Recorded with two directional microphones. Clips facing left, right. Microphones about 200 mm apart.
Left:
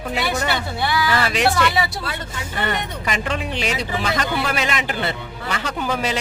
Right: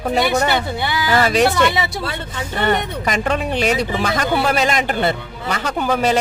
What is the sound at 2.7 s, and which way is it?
Speech, 45° right (ahead or behind).